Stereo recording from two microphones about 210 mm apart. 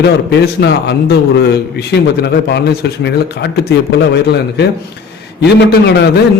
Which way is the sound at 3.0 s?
55° left (ahead or behind).